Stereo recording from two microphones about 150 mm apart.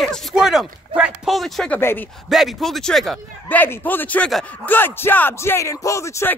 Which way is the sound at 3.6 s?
15° left (ahead or behind).